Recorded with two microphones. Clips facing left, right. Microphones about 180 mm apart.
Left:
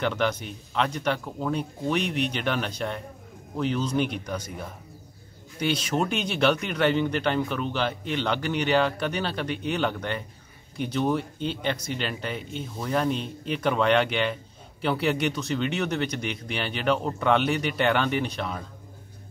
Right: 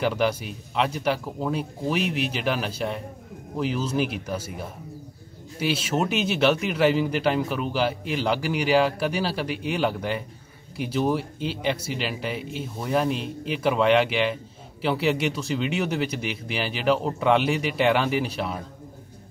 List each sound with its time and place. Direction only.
0.0 s speech: 10° right (ahead or behind)